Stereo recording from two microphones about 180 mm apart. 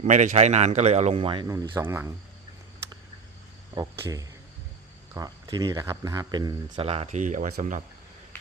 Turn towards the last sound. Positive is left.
turn(degrees=-45)  # may be behind; listen again after turning